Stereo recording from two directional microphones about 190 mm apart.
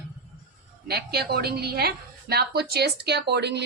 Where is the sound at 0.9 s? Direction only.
55° right (ahead or behind).